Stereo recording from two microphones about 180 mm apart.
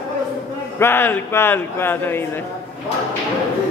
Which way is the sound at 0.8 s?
10° left (ahead or behind).